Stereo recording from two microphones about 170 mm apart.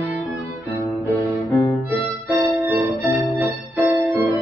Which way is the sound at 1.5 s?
15° left (ahead or behind).